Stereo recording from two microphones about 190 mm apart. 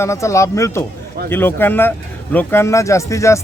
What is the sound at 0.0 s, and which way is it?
Speech, 15° left (ahead or behind).